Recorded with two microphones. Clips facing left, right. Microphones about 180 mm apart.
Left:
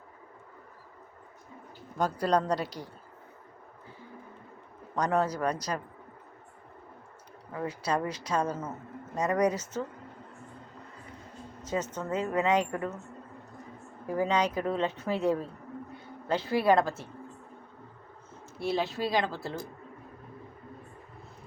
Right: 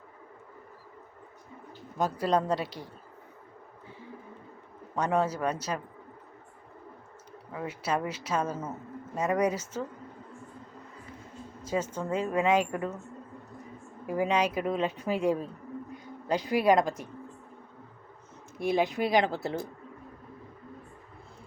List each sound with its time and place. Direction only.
2.0 s speech: 10° right (ahead or behind)
2.6 s a woman's voice: 40° left (ahead or behind)
4.9 s speech: 5° right (ahead or behind)
7.5 s speech: 10° right (ahead or behind)
11.6 s speech: 10° right (ahead or behind)
14.1 s speech: 10° right (ahead or behind)
18.6 s speech: 15° right (ahead or behind)